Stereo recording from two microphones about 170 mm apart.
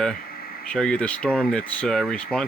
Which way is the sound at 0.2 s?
60° left (ahead or behind).